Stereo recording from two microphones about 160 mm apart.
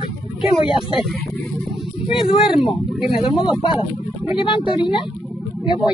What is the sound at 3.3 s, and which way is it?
Speech, 30° left (ahead or behind).